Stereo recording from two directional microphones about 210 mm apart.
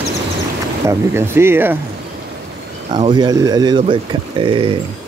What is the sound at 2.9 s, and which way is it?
Speech, 20° right (ahead or behind).